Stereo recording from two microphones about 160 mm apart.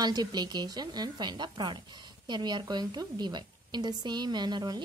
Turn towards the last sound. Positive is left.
turn(degrees=-25)  # may be behind; listen again after turning